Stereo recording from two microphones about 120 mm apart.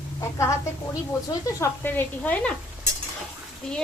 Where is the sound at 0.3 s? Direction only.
25° left (ahead or behind).